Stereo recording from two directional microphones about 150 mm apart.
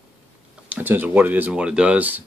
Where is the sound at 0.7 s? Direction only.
10° right (ahead or behind).